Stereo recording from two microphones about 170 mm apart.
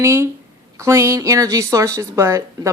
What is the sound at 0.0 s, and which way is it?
A woman's voice, 15° right (ahead or behind).